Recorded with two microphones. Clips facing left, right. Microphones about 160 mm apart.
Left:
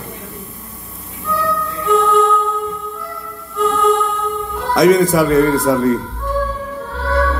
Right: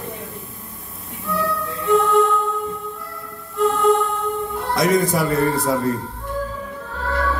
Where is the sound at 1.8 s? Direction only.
90° left.